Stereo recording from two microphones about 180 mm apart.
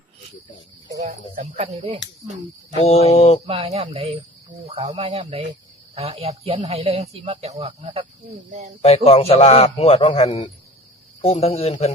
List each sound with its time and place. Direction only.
1.4 s speech: 35° right (ahead or behind)
2.7 s a man's voice: 35° left (ahead or behind)
3.4 s speech: 35° right (ahead or behind)
9.0 s a man's voice: 35° left (ahead or behind)